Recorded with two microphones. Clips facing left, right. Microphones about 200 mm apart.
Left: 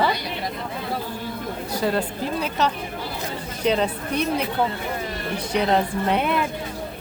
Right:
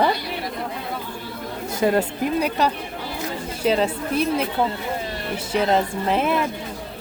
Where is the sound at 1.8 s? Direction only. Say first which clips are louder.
Right 5 dB; 15° right (ahead or behind).